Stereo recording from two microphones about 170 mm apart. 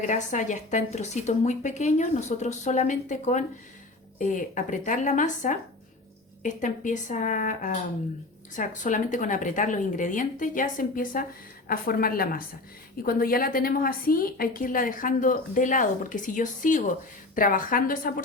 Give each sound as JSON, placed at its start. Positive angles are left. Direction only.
{"t": 0.0, "sound": "a woman's voice", "side_deg": 45}